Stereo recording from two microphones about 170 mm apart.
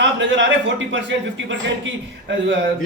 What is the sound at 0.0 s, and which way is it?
A man's voice, 90° right.